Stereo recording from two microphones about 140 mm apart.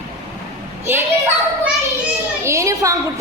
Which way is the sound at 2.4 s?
20° right (ahead or behind).